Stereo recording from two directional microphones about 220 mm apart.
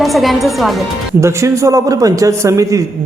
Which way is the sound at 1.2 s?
15° right (ahead or behind).